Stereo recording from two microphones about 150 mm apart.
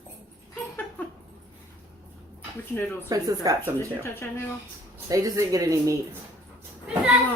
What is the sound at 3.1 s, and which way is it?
Speech, 25° right (ahead or behind).